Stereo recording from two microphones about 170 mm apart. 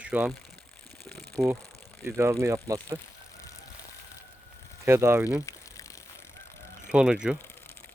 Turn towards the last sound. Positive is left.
turn(degrees=-5)  # may be behind; listen again after turning